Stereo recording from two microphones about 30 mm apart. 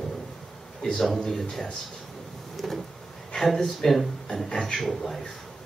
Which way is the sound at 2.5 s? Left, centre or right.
Centre.